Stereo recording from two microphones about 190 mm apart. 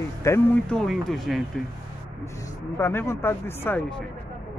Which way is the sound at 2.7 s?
15° left (ahead or behind).